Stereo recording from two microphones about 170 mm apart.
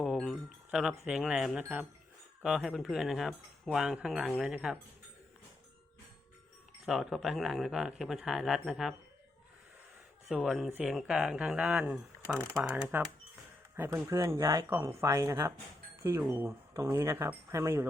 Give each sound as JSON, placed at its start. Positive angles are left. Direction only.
{"t": 0.0, "sound": "wind chime", "side_deg": 0}
{"t": 1.0, "sound": "speech", "side_deg": -5}
{"t": 6.8, "sound": "speech", "side_deg": 0}
{"t": 10.2, "sound": "speech", "side_deg": 0}